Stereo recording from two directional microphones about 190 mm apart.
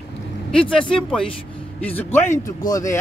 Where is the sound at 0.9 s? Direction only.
5° left (ahead or behind).